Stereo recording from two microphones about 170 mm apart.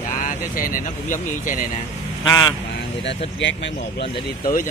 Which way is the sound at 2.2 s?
20° left (ahead or behind).